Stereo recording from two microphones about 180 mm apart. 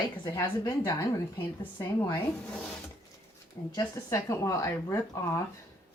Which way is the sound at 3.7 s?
20° left (ahead or behind).